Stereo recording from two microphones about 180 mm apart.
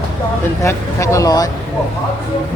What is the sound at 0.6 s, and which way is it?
Speech, 15° left (ahead or behind).